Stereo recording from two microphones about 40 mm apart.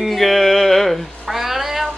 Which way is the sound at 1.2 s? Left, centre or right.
Centre.